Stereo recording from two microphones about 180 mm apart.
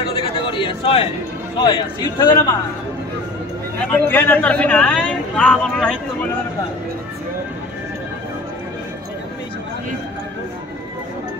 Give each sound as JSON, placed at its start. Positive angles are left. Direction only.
{"t": 0.1, "sound": "a sound", "side_deg": 30}
{"t": 1.6, "sound": "speech", "side_deg": 25}
{"t": 3.8, "sound": "speech", "side_deg": 10}